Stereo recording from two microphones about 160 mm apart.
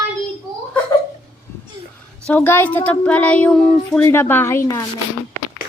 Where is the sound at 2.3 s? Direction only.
10° left (ahead or behind).